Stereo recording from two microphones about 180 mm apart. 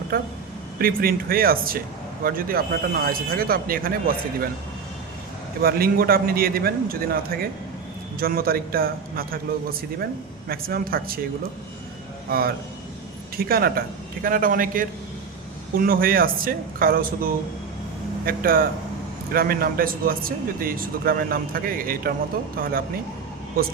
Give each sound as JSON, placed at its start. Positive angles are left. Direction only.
{"t": 0.1, "sound": "speech", "side_deg": -55}
{"t": 5.6, "sound": "speech", "side_deg": -55}
{"t": 12.3, "sound": "speech", "side_deg": -55}
{"t": 18.3, "sound": "speech", "side_deg": -55}